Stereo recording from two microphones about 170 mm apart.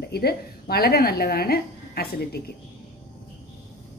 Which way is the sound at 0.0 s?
70° left (ahead or behind).